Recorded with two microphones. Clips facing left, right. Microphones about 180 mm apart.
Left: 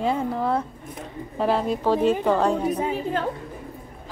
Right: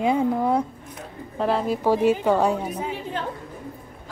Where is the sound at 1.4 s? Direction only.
Centre (ahead or behind).